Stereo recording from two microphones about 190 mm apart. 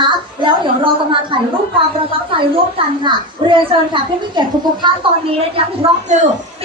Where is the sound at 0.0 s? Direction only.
25° right (ahead or behind).